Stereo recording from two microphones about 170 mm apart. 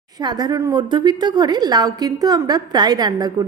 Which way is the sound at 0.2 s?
25° right (ahead or behind).